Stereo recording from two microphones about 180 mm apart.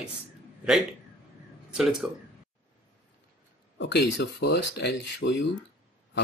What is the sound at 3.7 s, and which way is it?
Speech, 75° left (ahead or behind).